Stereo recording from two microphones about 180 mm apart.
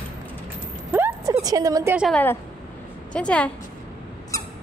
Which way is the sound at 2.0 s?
5° left (ahead or behind).